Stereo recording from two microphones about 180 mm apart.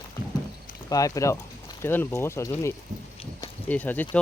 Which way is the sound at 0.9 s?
20° left (ahead or behind).